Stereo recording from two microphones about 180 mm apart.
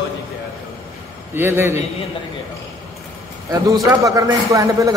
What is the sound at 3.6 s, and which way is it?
A man's voice, 20° right (ahead or behind).